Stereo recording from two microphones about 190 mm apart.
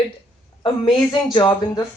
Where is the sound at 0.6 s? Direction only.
25° left (ahead or behind).